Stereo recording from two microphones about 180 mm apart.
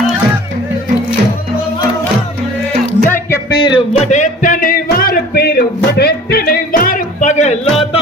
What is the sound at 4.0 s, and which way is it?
Music, 40° left (ahead or behind).